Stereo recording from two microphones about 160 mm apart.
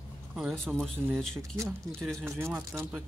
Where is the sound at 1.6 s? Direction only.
15° right (ahead or behind).